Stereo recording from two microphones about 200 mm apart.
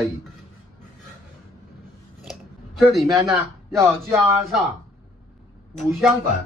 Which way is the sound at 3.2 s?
15° right (ahead or behind).